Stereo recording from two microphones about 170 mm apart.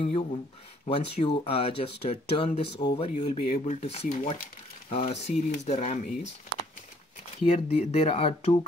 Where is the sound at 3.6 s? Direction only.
35° left (ahead or behind).